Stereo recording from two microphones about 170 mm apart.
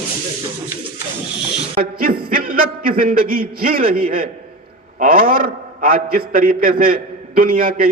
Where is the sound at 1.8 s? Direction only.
55° right (ahead or behind).